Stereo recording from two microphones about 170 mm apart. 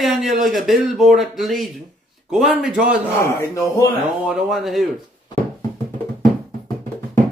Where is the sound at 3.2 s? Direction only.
15° left (ahead or behind).